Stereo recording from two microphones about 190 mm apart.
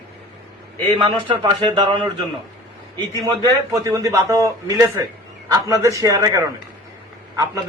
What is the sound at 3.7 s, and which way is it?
A man's voice, 15° right (ahead or behind).